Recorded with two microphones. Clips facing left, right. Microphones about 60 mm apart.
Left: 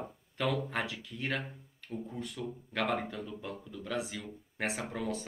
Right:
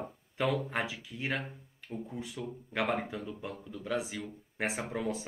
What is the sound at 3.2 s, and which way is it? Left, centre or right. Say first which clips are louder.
Speech: right 1 dB; centre.